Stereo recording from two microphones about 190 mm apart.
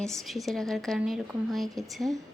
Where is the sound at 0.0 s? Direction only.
Centre (ahead or behind).